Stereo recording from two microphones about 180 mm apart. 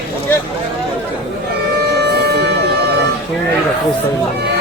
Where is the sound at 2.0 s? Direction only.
65° right (ahead or behind).